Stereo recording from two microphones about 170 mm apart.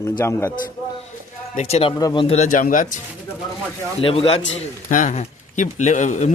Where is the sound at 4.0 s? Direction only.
35° left (ahead or behind).